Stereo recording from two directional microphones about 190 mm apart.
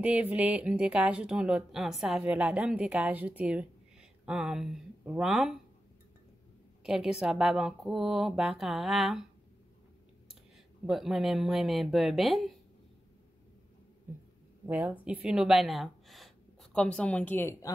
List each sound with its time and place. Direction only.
0.0 s speech: 5° right (ahead or behind)
6.8 s speech: 5° right (ahead or behind)
10.9 s speech: centre (ahead or behind)
14.7 s speech: 10° right (ahead or behind); by 17.6 s 10° left (ahead or behind)